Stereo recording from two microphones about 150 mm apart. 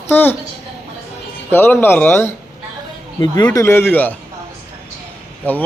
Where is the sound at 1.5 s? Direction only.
15° left (ahead or behind).